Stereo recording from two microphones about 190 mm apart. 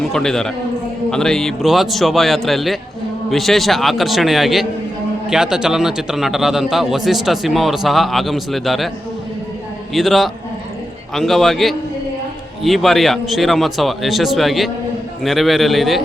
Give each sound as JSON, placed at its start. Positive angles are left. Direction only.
{"t": 0.0, "sound": "a man's voice", "side_deg": 0}
{"t": 9.9, "sound": "a man's voice", "side_deg": 0}